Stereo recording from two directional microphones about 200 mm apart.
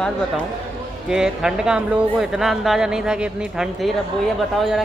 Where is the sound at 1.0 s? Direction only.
5° right (ahead or behind).